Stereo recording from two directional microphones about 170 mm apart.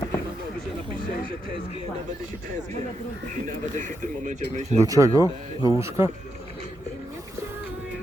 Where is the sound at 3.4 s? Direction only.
50° right (ahead or behind).